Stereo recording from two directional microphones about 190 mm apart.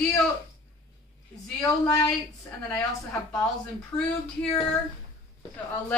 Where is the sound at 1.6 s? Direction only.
15° left (ahead or behind).